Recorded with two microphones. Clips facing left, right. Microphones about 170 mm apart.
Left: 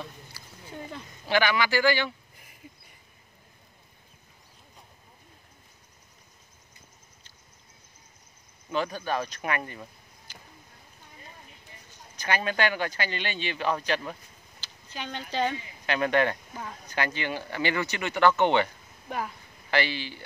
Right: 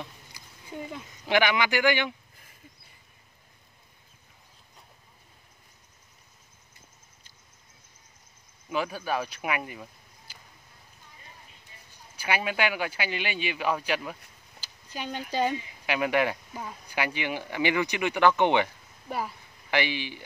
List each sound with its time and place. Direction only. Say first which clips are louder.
0.0 s a sound: left 1 dB; 15° right (ahead or behind)
1.2 s speech: right 1 dB; 20° right (ahead or behind)
8.6 s speech: left 1 dB; 10° right (ahead or behind)
11.9 s speech: even; 10° right (ahead or behind)